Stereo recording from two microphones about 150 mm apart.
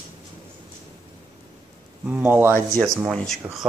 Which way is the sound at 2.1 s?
10° right (ahead or behind).